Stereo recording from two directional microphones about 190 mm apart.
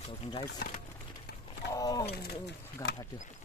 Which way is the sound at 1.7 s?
20° left (ahead or behind).